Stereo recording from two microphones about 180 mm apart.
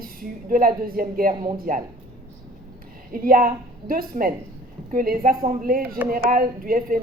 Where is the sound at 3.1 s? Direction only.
50° right (ahead or behind).